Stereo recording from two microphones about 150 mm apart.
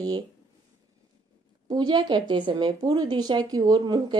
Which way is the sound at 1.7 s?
30° right (ahead or behind).